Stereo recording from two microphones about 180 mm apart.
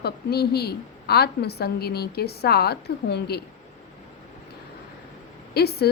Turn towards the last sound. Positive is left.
turn(degrees=65)  # may be behind; listen again after turning